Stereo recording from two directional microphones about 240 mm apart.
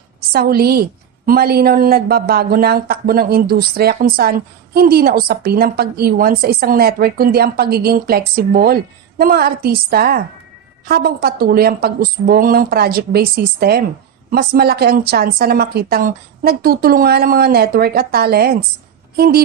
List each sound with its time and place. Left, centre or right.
0.3 s speech: right